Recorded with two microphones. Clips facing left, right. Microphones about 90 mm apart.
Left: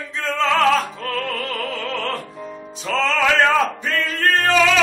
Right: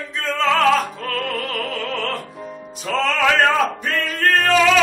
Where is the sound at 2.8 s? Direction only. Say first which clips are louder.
Even; 5° right (ahead or behind).